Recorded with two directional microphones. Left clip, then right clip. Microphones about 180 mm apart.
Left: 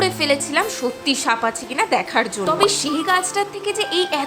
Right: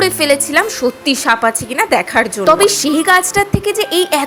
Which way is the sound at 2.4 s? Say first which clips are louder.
Right 9 dB; 30° right (ahead or behind).